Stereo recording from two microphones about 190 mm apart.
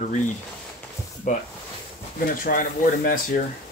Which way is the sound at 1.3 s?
40° left (ahead or behind).